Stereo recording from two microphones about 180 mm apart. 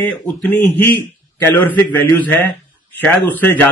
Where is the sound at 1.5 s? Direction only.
10° left (ahead or behind).